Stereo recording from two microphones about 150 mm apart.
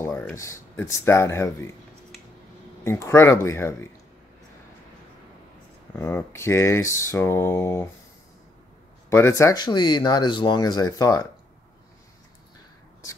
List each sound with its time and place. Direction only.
0.0 s a sound: 15° left (ahead or behind)
0.8 s speech: 15° left (ahead or behind)
2.8 s speech: 15° left (ahead or behind)
5.9 s speech: 15° left (ahead or behind)
9.1 s speech: 20° left (ahead or behind)